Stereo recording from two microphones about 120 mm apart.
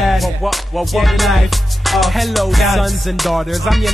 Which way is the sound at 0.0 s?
Centre (ahead or behind).